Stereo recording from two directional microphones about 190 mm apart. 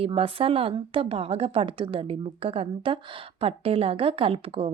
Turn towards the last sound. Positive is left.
turn(degrees=-30)  # may be behind; listen again after turning